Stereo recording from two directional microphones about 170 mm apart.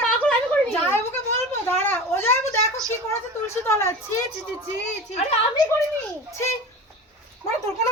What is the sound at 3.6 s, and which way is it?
Speech, 15° left (ahead or behind).